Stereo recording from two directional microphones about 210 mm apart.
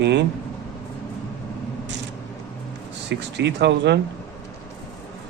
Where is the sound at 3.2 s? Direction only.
55° right (ahead or behind).